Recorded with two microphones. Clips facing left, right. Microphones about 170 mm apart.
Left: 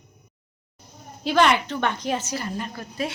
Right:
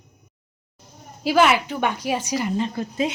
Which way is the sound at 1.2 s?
5° right (ahead or behind).